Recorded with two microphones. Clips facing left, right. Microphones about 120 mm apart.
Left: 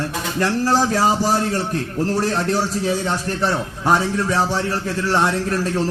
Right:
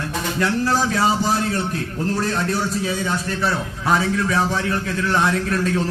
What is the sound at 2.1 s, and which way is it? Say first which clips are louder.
A man's voice: left 1 dB; 35° left (ahead or behind).